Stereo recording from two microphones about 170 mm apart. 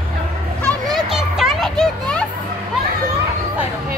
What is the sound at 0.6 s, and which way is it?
Children playing, centre (ahead or behind).